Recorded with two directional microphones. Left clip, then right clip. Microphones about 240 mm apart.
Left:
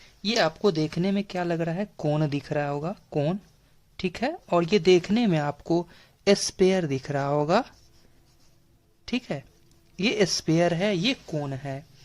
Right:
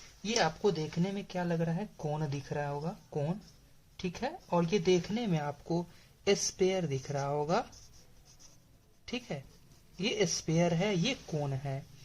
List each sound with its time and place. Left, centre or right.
0.2 s speech: left
9.0 s a woman's voice: left